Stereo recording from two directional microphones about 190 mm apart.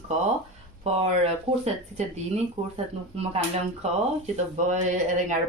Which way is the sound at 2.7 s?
30° right (ahead or behind).